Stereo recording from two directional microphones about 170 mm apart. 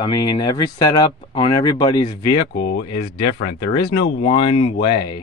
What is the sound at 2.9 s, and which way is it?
Speech, 50° left (ahead or behind).